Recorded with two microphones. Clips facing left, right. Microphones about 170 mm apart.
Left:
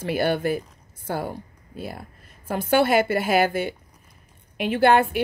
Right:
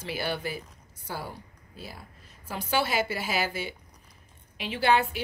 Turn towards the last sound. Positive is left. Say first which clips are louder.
# left 7 dB
turn(degrees=55)  # may be behind; listen again after turning